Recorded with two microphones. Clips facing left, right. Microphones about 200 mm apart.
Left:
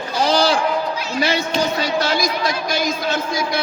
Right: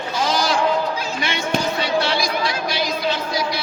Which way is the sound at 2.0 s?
45° left (ahead or behind).